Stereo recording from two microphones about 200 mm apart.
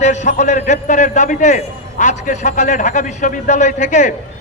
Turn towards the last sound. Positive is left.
turn(degrees=35)  # may be behind; listen again after turning